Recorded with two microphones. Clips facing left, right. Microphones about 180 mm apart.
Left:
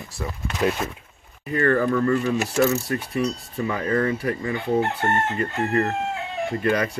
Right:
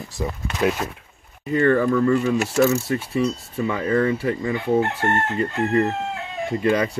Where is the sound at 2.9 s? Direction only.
25° right (ahead or behind).